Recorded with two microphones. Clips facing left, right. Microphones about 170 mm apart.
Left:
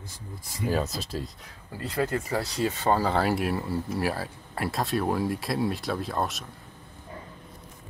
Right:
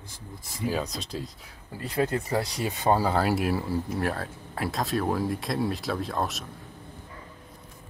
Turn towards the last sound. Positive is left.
turn(degrees=0)  # may be behind; listen again after turning